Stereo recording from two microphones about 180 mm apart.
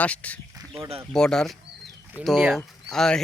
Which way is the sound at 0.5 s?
15° right (ahead or behind).